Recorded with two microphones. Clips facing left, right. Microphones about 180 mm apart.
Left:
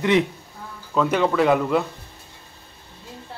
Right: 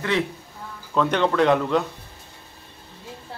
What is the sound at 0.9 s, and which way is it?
Speech, 5° left (ahead or behind).